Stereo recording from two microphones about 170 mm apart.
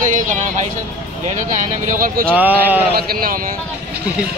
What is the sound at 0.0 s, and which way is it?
Vehicle, 50° right (ahead or behind).